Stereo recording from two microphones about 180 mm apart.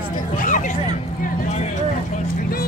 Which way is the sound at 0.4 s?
45° left (ahead or behind).